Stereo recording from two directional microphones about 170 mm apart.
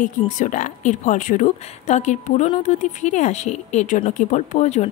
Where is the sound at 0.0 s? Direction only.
50° left (ahead or behind).